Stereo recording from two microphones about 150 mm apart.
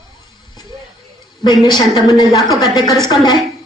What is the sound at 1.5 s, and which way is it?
A woman's voice, 30° left (ahead or behind).